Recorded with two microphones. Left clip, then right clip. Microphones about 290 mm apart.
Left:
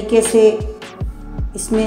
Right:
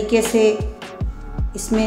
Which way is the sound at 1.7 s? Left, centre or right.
Centre.